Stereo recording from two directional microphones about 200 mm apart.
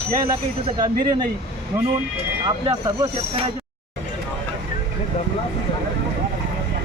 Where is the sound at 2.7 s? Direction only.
20° right (ahead or behind).